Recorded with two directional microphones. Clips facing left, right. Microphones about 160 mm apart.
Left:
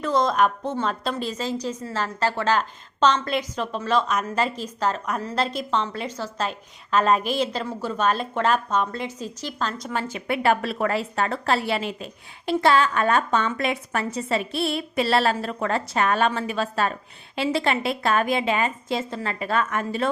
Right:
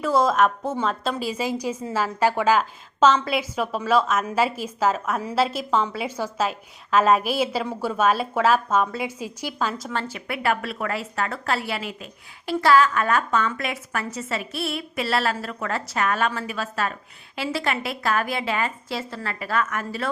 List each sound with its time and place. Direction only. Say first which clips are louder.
0.0 s a woman's voice: right 1 dB; 5° right (ahead or behind)
9.9 s a woman's voice: left 3 dB; 15° left (ahead or behind)